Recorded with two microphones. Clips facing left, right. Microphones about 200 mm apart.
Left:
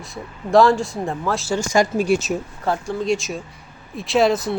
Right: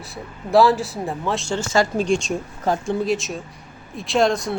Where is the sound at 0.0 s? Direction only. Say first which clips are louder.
Left 2 dB; centre (ahead or behind).